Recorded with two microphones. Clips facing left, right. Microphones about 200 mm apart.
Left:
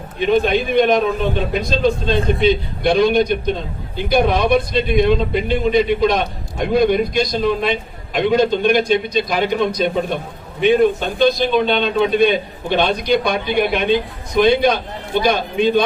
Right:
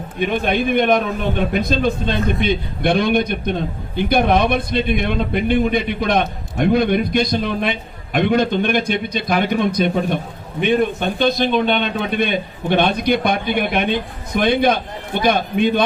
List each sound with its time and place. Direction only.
0.2 s a man's voice: 55° right (ahead or behind)